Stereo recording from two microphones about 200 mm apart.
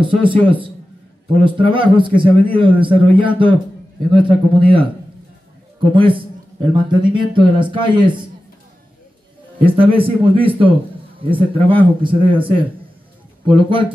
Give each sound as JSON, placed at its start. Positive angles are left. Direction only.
{"t": 0.0, "sound": "a man's voice", "side_deg": -25}
{"t": 9.7, "sound": "a man's voice", "side_deg": -25}